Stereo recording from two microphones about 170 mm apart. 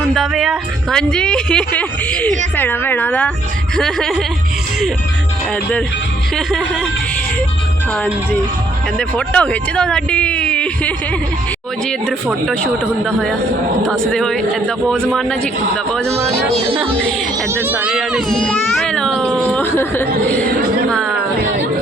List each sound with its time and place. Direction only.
0.1 s a child's voice: centre (ahead or behind)
6.3 s a child's voice: 5° left (ahead or behind)
7.9 s a child's voice: 10° left (ahead or behind)
16.6 s speech: 35° right (ahead or behind)
17.5 s a child's voice: 10° right (ahead or behind); by 20.5 s 10° left (ahead or behind)